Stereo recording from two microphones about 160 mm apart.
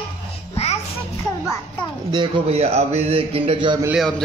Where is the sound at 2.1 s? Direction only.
30° right (ahead or behind).